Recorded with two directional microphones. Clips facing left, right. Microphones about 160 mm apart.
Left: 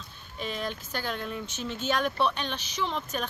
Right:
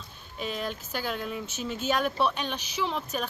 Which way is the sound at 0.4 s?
5° right (ahead or behind).